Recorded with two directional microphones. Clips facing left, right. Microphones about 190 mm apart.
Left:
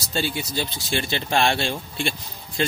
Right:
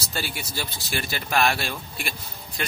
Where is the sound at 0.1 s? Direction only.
25° left (ahead or behind).